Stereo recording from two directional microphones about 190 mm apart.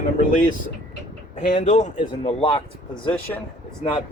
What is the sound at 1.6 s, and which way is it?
Speech, 35° left (ahead or behind).